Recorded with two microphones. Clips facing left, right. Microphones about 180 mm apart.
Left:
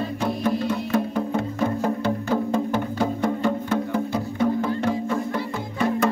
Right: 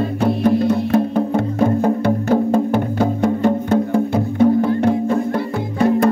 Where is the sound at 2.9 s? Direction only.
50° right (ahead or behind).